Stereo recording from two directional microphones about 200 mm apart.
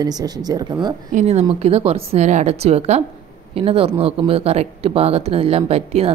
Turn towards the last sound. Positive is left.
turn(degrees=-30)  # may be behind; listen again after turning